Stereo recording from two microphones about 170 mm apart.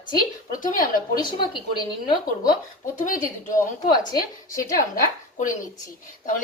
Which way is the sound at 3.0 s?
50° left (ahead or behind).